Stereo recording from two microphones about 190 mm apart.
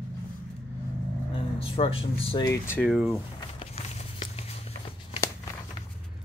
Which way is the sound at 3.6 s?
35° left (ahead or behind).